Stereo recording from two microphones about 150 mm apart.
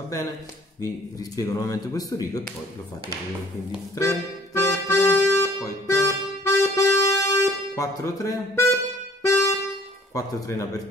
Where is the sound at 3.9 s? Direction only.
20° left (ahead or behind).